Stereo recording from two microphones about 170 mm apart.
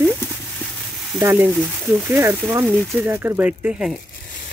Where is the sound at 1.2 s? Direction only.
15° right (ahead or behind).